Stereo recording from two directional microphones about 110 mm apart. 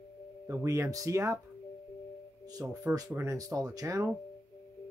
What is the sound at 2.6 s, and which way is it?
Speech, 20° right (ahead or behind).